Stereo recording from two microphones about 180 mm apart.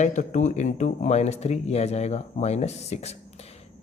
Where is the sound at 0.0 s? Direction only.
40° left (ahead or behind).